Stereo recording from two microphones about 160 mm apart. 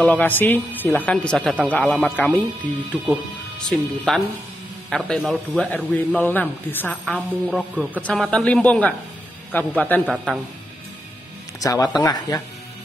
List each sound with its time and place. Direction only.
0.0 s a man's voice: 10° left (ahead or behind)
3.6 s a man's voice: 5° left (ahead or behind)
7.2 s a man's voice: 5° right (ahead or behind)
8.0 s a man's voice: 5° left (ahead or behind)
10.0 s a man's voice: 5° right (ahead or behind)
11.6 s speech: 20° left (ahead or behind)